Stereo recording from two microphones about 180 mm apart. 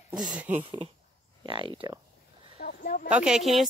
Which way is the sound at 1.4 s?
30° right (ahead or behind).